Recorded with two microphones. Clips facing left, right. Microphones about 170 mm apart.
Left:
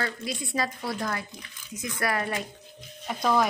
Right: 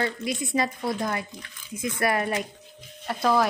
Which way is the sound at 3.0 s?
5° right (ahead or behind).